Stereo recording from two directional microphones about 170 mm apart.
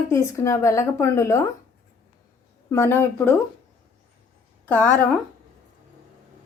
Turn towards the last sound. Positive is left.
turn(degrees=10)  # may be behind; listen again after turning